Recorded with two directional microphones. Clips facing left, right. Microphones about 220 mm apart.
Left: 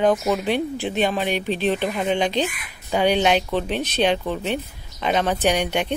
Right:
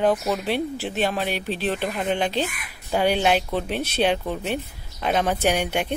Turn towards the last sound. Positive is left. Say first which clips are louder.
# left 2 dB
turn(degrees=-10)  # may be behind; listen again after turning